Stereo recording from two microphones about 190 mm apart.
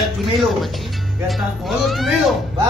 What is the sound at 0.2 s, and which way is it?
Speech, centre (ahead or behind).